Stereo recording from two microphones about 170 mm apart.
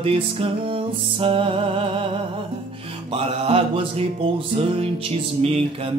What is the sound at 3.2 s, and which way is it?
Mantra, 35° right (ahead or behind).